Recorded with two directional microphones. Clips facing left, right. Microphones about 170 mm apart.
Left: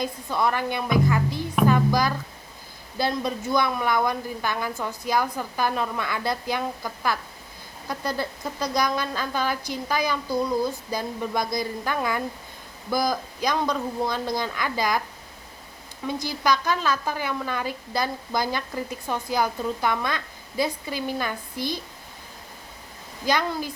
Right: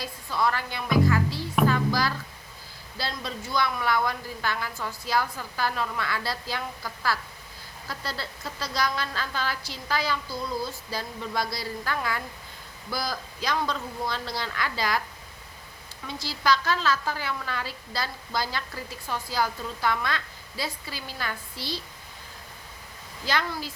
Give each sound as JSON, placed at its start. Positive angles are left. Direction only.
{"t": 0.0, "sound": "a woman's voice", "side_deg": 20}
{"t": 16.0, "sound": "a woman's voice", "side_deg": 15}
{"t": 23.2, "sound": "speech", "side_deg": 15}